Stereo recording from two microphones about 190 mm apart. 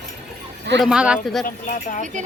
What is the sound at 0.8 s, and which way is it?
Speech, 5° right (ahead or behind).